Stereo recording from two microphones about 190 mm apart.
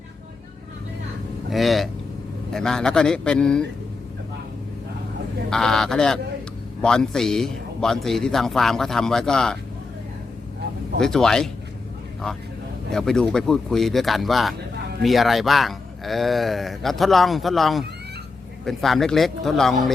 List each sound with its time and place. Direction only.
1.5 s speech: centre (ahead or behind)
5.5 s speech: 5° left (ahead or behind)
11.0 s speech: centre (ahead or behind)
12.9 s speech: centre (ahead or behind)